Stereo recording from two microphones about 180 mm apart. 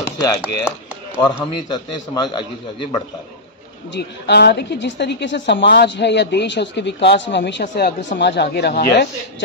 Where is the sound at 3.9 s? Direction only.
70° left (ahead or behind).